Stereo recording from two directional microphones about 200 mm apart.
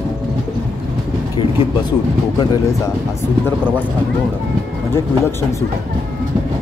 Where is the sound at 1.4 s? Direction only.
25° left (ahead or behind).